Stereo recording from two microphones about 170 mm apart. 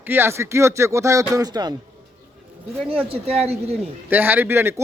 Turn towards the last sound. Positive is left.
turn(degrees=-15)  # may be behind; listen again after turning